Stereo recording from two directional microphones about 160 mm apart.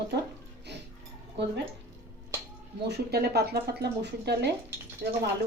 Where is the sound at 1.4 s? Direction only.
90° right.